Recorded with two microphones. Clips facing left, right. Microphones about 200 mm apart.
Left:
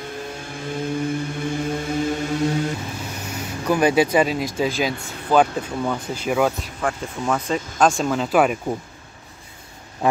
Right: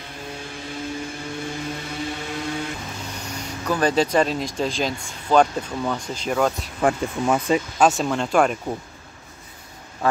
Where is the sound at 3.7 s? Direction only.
10° left (ahead or behind).